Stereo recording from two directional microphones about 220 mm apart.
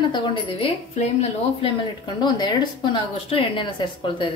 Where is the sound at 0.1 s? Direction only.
25° left (ahead or behind).